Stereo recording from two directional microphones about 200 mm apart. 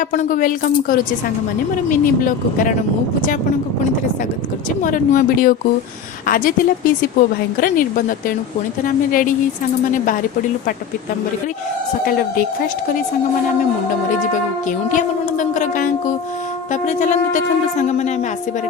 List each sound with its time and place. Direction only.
0.1 s a woman's voice: 40° left (ahead or behind)
4.8 s a woman's voice: 40° left (ahead or behind)
9.0 s a woman's voice: 45° left (ahead or behind)
14.8 s speech: 40° left (ahead or behind)